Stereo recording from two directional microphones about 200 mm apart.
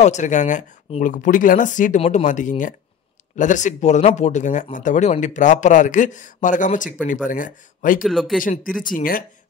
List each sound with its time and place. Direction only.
0.0 s speech: 35° left (ahead or behind)
8.0 s speech: centre (ahead or behind)
8.4 s speech: 40° left (ahead or behind)